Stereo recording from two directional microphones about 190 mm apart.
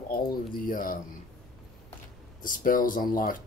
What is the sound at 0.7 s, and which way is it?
Speech, 50° left (ahead or behind).